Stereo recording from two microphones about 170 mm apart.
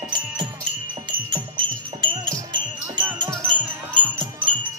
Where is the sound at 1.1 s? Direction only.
30° right (ahead or behind).